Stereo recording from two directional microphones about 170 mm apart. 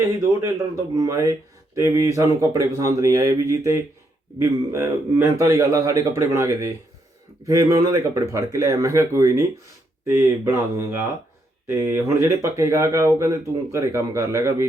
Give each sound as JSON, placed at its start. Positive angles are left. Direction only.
{"t": 0.9, "sound": "speech", "side_deg": -20}